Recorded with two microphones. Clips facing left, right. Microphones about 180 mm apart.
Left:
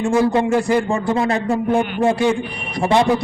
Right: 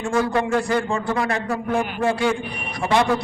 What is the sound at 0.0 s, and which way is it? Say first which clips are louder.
A man's voice: left 5 dB; 20° left (ahead or behind).